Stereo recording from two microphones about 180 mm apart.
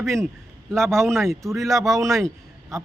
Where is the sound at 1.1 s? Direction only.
Centre (ahead or behind).